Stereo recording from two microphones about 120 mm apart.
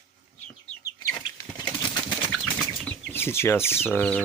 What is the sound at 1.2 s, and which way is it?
Bird flight, 35° left (ahead or behind).